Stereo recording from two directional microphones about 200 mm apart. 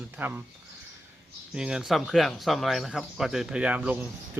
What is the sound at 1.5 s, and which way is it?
Speech, 5° right (ahead or behind).